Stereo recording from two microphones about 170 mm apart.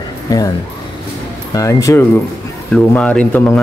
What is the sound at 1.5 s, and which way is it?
Speech, 20° left (ahead or behind).